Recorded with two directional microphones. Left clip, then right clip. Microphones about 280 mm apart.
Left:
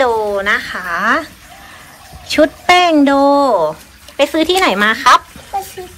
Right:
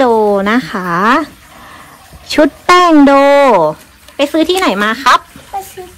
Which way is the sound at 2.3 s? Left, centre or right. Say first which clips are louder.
Right 1 dB; right.